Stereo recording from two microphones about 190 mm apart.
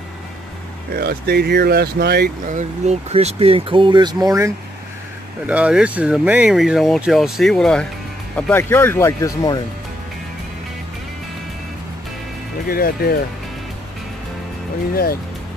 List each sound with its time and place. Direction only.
0.9 s speech: 55° right (ahead or behind)
2.5 s speech: 35° right (ahead or behind); by 4.5 s 20° right (ahead or behind)
5.5 s speech: 5° right (ahead or behind); by 9.6 s 15° left (ahead or behind)
12.6 s speech: 50° left (ahead or behind)